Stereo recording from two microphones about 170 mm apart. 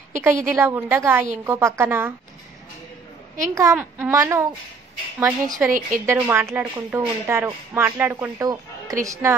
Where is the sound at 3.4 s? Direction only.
20° right (ahead or behind).